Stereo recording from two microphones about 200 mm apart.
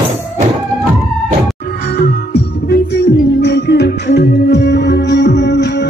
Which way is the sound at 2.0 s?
50° left (ahead or behind).